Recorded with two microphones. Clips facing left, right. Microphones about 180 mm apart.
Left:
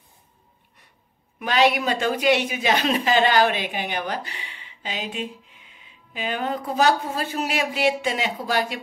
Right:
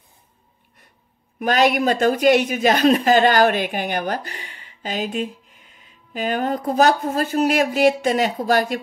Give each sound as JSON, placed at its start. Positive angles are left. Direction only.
{"t": 1.4, "sound": "speech", "side_deg": -45}